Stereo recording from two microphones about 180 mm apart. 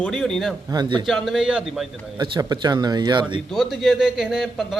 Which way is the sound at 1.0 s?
Centre (ahead or behind).